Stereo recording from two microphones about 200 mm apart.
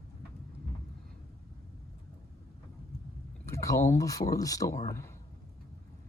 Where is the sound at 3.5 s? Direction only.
15° left (ahead or behind).